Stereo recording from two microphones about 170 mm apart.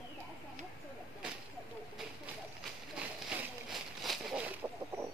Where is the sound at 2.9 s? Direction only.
5° right (ahead or behind).